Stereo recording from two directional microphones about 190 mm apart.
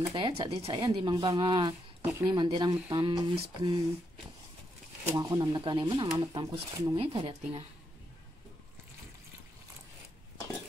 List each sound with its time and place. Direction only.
0.1 s speech: 30° right (ahead or behind)
5.1 s speech: 20° right (ahead or behind)